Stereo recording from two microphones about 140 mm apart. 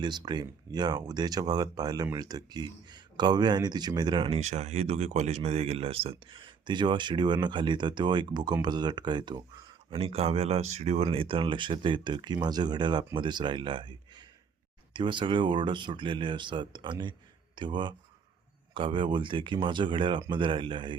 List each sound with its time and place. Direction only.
0.0 s speech: 30° right (ahead or behind)
4.4 s speech: 55° right (ahead or behind); by 9.4 s 30° right (ahead or behind)
9.9 s speech: 45° right (ahead or behind)